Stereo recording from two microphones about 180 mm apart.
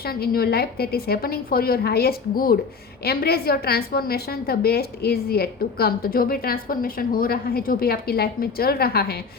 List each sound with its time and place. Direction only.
0.0 s a woman's voice: 60° left (ahead or behind)